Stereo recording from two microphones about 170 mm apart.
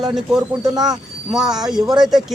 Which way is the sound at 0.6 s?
25° right (ahead or behind).